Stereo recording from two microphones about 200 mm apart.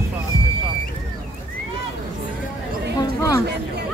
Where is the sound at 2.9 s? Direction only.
15° left (ahead or behind).